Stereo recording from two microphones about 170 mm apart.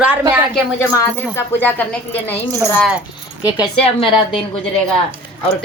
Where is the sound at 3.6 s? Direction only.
30° left (ahead or behind).